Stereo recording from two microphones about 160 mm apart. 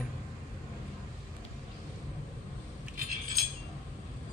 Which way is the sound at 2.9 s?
60° right (ahead or behind).